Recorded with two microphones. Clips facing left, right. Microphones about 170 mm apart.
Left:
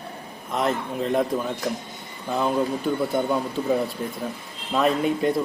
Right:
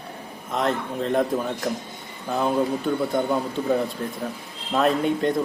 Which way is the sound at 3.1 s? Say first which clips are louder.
Even; centre (ahead or behind).